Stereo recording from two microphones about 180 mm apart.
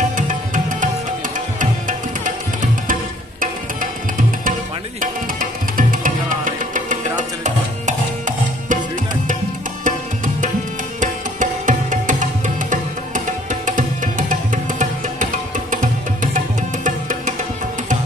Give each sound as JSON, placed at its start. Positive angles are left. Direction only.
{"t": 1.6, "sound": "music", "side_deg": -45}
{"t": 5.0, "sound": "music", "side_deg": -50}